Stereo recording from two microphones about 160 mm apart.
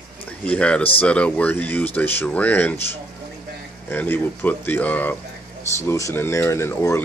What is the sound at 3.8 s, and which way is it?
Speech, 10° left (ahead or behind).